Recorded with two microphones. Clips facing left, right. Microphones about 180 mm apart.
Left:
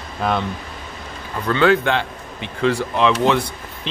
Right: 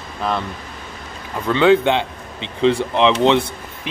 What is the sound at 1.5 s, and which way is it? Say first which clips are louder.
Speech: right 3 dB; 20° right (ahead or behind).